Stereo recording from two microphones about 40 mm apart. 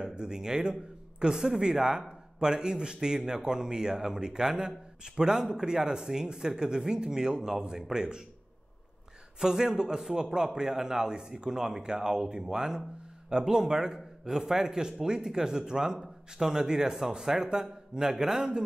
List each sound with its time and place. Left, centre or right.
0.0 s speech: centre
9.4 s speech: centre